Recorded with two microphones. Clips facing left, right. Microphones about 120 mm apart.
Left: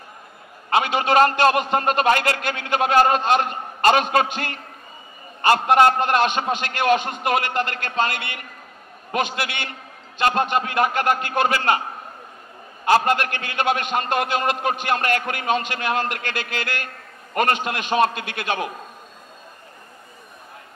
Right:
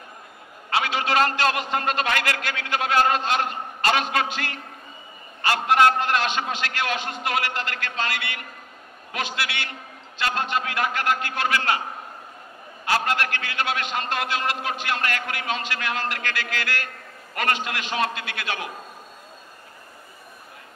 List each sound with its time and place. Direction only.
0.9 s a man's voice: 45° left (ahead or behind)
12.8 s a man's voice: 50° left (ahead or behind)
16.3 s a man's voice: 20° left (ahead or behind)
17.3 s a man's voice: 45° left (ahead or behind)